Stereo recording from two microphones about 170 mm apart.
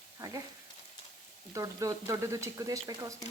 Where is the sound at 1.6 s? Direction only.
20° right (ahead or behind).